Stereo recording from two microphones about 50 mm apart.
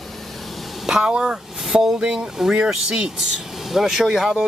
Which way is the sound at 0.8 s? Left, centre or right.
Centre.